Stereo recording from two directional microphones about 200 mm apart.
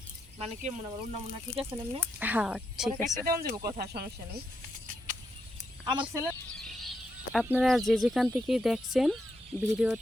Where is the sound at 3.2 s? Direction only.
50° right (ahead or behind).